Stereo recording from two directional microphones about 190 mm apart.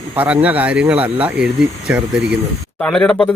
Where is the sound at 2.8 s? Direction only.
5° left (ahead or behind).